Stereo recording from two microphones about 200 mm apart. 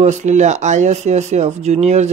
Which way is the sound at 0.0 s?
35° right (ahead or behind).